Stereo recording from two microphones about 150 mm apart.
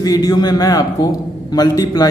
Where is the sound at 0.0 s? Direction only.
25° left (ahead or behind).